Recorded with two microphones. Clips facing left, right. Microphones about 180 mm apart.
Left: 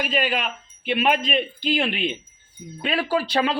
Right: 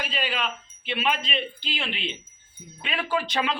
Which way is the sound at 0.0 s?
50° left (ahead or behind).